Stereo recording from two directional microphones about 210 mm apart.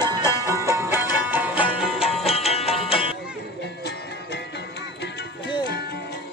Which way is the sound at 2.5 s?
30° left (ahead or behind).